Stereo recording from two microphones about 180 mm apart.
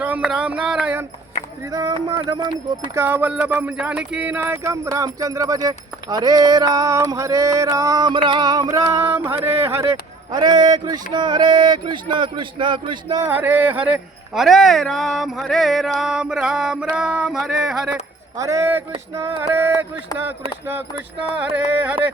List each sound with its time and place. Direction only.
0.0 s speech: 5° right (ahead or behind)
1.6 s speech: 20° right (ahead or behind); by 16.8 s 5° right (ahead or behind)
16.9 s a sound: 5° right (ahead or behind)
18.3 s speech: 15° right (ahead or behind)
21.3 s speech: 10° right (ahead or behind)